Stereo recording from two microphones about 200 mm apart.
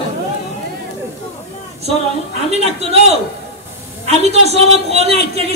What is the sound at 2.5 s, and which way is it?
Speech, 30° right (ahead or behind).